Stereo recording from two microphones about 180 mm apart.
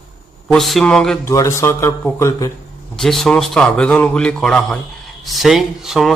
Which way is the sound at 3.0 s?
Centre (ahead or behind).